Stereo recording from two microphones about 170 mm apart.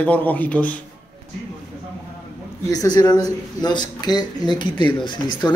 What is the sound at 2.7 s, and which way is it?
Speech, 20° left (ahead or behind).